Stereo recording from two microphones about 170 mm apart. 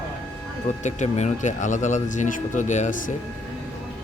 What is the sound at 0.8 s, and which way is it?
Speech, 45° left (ahead or behind).